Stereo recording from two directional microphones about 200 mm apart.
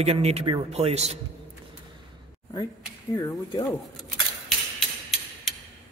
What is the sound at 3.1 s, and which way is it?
Speech, 20° left (ahead or behind).